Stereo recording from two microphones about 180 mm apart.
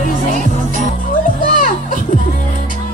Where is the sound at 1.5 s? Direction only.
45° left (ahead or behind).